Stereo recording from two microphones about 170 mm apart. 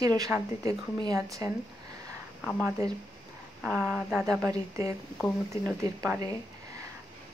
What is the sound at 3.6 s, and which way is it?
Speech, 5° right (ahead or behind).